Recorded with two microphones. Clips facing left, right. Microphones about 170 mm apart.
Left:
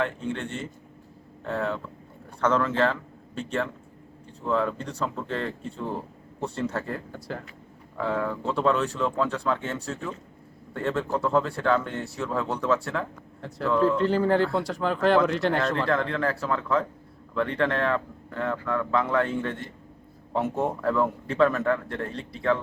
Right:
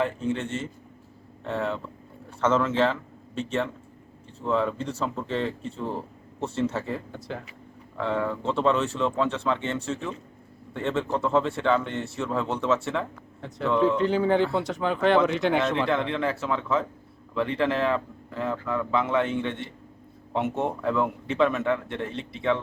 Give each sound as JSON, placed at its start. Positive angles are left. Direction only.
{"t": 0.0, "sound": "speech", "side_deg": -5}
{"t": 22.2, "sound": "speech", "side_deg": -20}